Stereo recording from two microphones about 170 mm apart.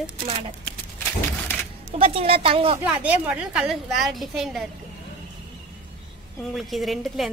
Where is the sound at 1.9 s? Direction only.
35° right (ahead or behind).